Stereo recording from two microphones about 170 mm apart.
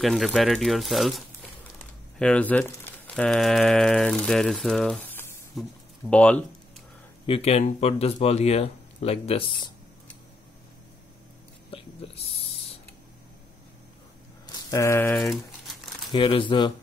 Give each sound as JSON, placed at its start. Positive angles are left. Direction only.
{"t": 0.0, "sound": "speech", "side_deg": 0}
{"t": 7.2, "sound": "speech", "side_deg": 35}
{"t": 11.7, "sound": "a sound", "side_deg": 35}
{"t": 12.3, "sound": "creak", "side_deg": 35}
{"t": 14.4, "sound": "a sound", "side_deg": 20}
{"t": 15.0, "sound": "crumpling", "side_deg": 0}
{"t": 16.1, "sound": "speech", "side_deg": 30}